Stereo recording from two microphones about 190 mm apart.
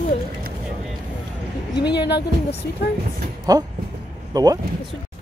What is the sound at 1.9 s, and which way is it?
Speech, 60° left (ahead or behind).